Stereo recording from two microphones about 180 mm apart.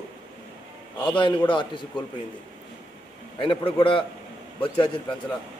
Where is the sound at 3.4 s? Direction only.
30° left (ahead or behind).